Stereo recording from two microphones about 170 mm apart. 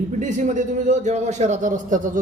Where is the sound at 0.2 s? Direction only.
45° right (ahead or behind).